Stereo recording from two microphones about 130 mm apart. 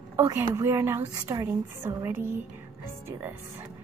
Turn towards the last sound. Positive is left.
turn(degrees=-15)  # may be behind; listen again after turning